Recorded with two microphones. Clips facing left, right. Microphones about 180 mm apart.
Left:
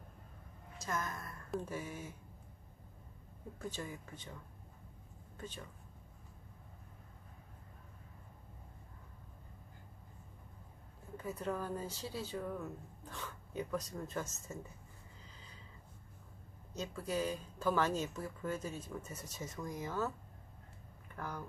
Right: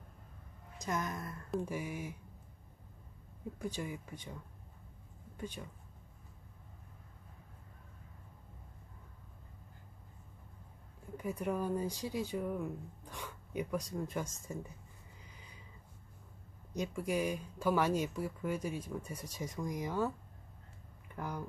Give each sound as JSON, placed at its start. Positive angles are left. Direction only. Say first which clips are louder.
{"t": 0.7, "sound": "a woman's voice", "louder": "right 3 dB", "side_deg": -20}
{"t": 3.5, "sound": "speech", "louder": "right 3 dB", "side_deg": -10}
{"t": 5.4, "sound": "speech", "louder": "right 4 dB", "side_deg": -10}
{"t": 11.1, "sound": "speech", "louder": "right 3 dB", "side_deg": -15}
{"t": 15.2, "sound": "a sound", "louder": "even", "side_deg": -15}
{"t": 16.7, "sound": "speech", "louder": "right 3 dB", "side_deg": -15}
{"t": 21.2, "sound": "speech", "louder": "right 3 dB", "side_deg": -15}